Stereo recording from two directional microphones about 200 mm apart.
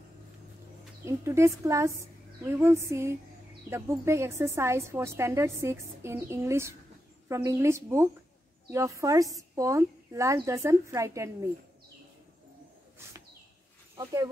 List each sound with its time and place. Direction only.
1.0 s a woman's voice: 15° right (ahead or behind)
13.9 s a woman's voice: 15° right (ahead or behind)